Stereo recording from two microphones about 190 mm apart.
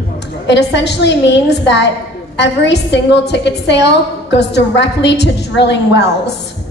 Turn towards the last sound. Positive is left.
turn(degrees=65)  # may be behind; listen again after turning